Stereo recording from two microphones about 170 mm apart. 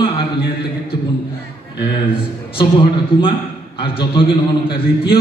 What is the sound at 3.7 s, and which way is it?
Speech, 30° left (ahead or behind).